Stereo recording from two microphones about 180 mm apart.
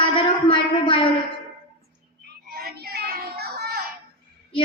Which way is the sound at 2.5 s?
60° right (ahead or behind).